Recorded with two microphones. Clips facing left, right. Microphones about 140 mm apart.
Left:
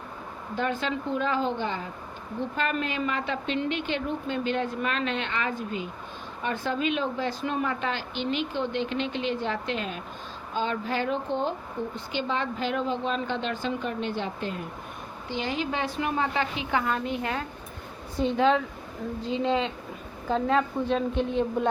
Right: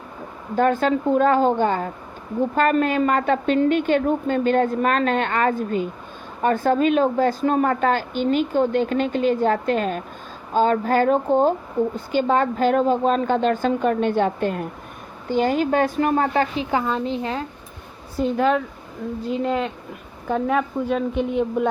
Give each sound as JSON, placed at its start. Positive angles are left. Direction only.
{"t": 0.5, "sound": "a woman's voice", "side_deg": -50}
{"t": 18.2, "sound": "speech", "side_deg": -5}
{"t": 20.3, "sound": "a woman's voice", "side_deg": -10}